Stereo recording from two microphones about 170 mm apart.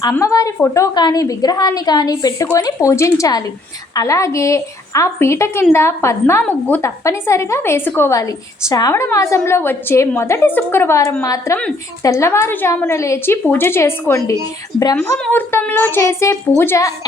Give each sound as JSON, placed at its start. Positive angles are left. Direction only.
{"t": 0.0, "sound": "a woman's voice", "side_deg": 20}